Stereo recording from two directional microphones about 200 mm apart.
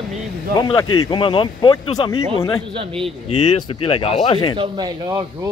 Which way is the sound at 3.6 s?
25° left (ahead or behind).